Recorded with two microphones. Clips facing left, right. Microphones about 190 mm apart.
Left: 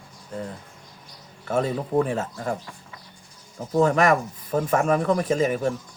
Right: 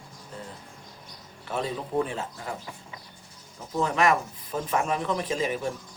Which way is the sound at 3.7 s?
45° left (ahead or behind).